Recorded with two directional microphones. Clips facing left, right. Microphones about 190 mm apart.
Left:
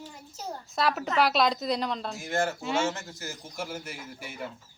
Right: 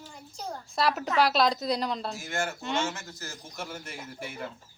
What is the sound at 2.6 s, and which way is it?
Speech, 5° left (ahead or behind).